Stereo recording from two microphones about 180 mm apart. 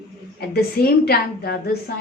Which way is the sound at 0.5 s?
55° left (ahead or behind).